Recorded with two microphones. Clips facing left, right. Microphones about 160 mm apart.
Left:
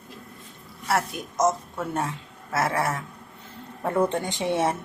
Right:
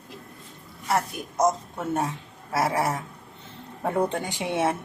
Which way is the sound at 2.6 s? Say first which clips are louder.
Right 1 dB; 15° right (ahead or behind).